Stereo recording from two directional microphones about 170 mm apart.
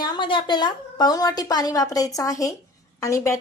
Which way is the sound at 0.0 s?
30° left (ahead or behind).